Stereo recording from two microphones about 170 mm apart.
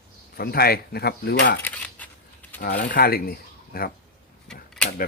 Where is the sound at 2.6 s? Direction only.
55° left (ahead or behind).